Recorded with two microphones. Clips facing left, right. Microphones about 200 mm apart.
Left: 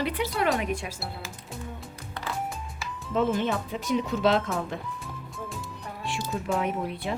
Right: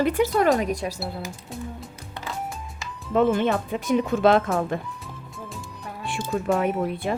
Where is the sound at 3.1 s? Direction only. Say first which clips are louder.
Right 5 dB; 55° right (ahead or behind).